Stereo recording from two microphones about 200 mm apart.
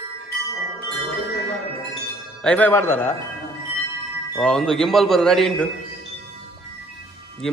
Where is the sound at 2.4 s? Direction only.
5° left (ahead or behind).